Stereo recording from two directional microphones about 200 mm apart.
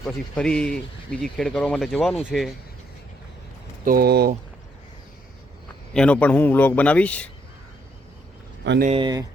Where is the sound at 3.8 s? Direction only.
50° right (ahead or behind).